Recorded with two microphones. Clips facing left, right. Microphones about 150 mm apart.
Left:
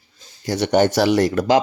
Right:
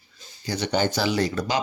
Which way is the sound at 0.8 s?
70° left (ahead or behind).